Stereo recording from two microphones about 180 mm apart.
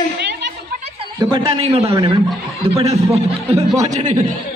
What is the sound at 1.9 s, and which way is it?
Speech, 20° right (ahead or behind).